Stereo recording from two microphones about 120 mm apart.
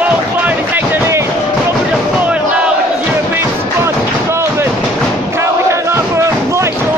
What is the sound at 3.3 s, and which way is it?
Music, 20° right (ahead or behind).